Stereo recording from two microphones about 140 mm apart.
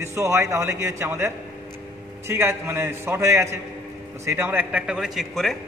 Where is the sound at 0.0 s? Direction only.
20° right (ahead or behind).